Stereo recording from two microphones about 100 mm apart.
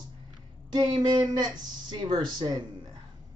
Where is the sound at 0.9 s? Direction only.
50° right (ahead or behind).